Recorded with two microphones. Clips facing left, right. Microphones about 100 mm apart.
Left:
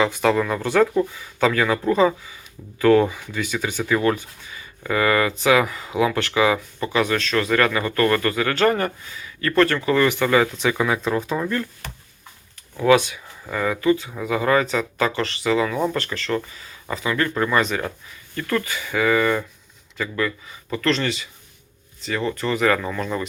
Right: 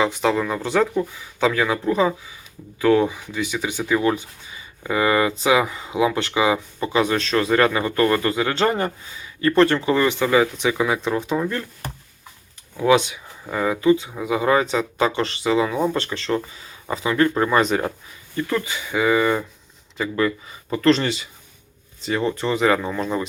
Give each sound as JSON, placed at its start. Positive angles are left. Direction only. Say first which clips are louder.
{"t": 0.0, "sound": "speech", "louder": "left 1 dB", "side_deg": -15}
{"t": 18.3, "sound": "speech", "louder": "right 1 dB", "side_deg": -15}